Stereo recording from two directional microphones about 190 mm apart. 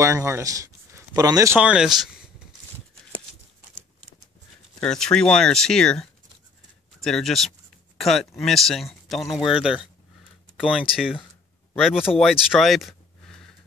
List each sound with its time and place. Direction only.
0.0 s speech: 15° right (ahead or behind)
1.6 s speech: 5° right (ahead or behind)
4.7 s speech: 5° left (ahead or behind)